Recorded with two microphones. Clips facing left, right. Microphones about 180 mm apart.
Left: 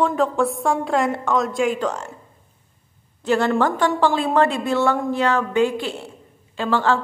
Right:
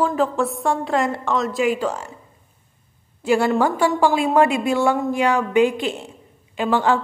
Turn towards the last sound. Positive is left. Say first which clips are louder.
# right 1 dB
turn(degrees=-15)  # may be behind; listen again after turning